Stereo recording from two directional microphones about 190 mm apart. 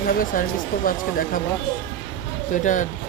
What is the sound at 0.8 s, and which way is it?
Speech, 45° left (ahead or behind).